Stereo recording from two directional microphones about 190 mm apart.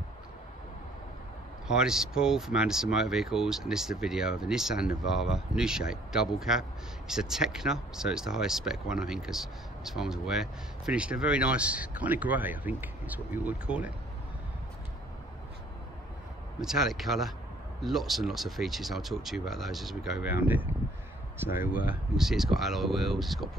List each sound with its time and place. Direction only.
1.7 s speech: 5° right (ahead or behind)
16.6 s speech: centre (ahead or behind)
22.1 s speech: centre (ahead or behind)